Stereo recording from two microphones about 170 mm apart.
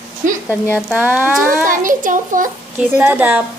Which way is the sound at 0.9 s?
10° right (ahead or behind).